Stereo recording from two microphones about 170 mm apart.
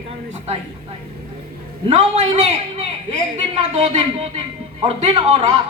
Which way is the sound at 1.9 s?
35° right (ahead or behind).